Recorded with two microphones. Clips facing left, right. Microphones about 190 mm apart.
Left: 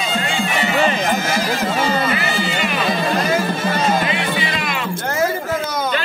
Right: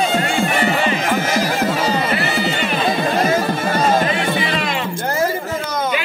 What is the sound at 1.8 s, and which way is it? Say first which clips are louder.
Music: even; 35° right (ahead or behind).